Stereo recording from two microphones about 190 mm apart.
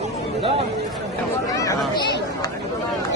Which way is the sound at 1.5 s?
15° left (ahead or behind).